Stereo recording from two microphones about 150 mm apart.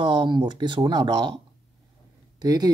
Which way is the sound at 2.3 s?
25° right (ahead or behind).